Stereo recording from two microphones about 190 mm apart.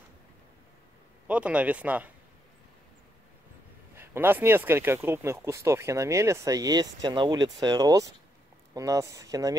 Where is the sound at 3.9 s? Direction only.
10° right (ahead or behind).